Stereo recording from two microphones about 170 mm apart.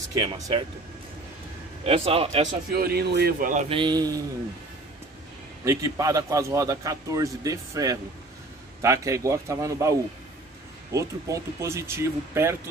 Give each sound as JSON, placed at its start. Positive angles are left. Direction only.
{"t": 0.1, "sound": "a man's voice", "side_deg": -25}
{"t": 1.9, "sound": "a man's voice", "side_deg": -35}
{"t": 2.7, "sound": "a man's voice", "side_deg": -65}
{"t": 3.3, "sound": "speech", "side_deg": -50}
{"t": 3.6, "sound": "a man's voice", "side_deg": -30}
{"t": 5.7, "sound": "a man's voice", "side_deg": -20}